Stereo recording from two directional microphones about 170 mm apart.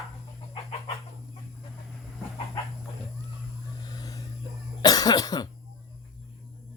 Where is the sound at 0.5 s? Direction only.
35° left (ahead or behind).